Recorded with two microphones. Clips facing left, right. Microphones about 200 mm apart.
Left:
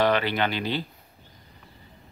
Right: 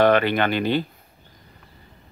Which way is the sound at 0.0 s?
55° right (ahead or behind).